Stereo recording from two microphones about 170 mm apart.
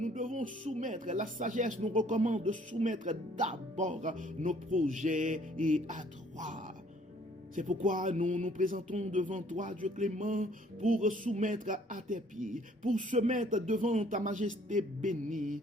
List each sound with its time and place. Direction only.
0.0 s speech: 45° right (ahead or behind)
7.5 s speech: 50° right (ahead or behind)